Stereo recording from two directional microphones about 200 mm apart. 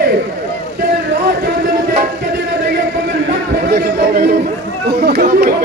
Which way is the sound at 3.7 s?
50° right (ahead or behind).